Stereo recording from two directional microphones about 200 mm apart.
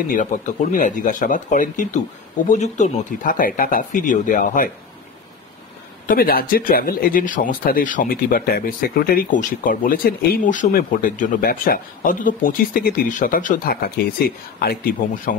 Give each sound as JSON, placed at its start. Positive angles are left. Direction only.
{"t": 0.1, "sound": "speech", "side_deg": 40}
{"t": 6.0, "sound": "speech", "side_deg": 45}